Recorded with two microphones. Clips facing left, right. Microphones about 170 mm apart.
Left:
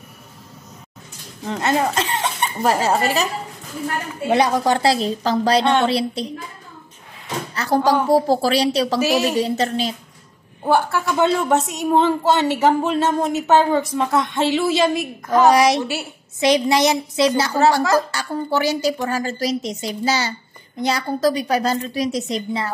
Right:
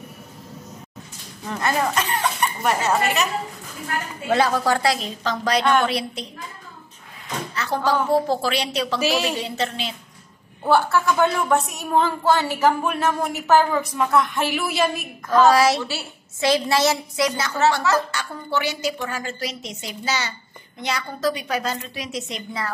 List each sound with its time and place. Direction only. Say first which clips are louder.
1.5 s speech: left 3 dB; 25° left (ahead or behind)
4.3 s a woman's voice: left 2 dB; 20° left (ahead or behind)
7.5 s door: left 6 dB; 40° left (ahead or behind)
8.1 s a woman's voice: left 4 dB; 35° left (ahead or behind)
9.0 s a woman's voice: left 2 dB; 10° left (ahead or behind)
9.4 s a woman's voice: left 7 dB; 40° left (ahead or behind)
10.6 s a woman's voice: even; 15° left (ahead or behind)
17.4 s a woman's voice: left 4 dB; 35° left (ahead or behind)